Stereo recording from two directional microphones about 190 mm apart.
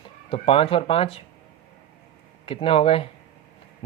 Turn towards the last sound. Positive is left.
turn(degrees=30)  # may be behind; listen again after turning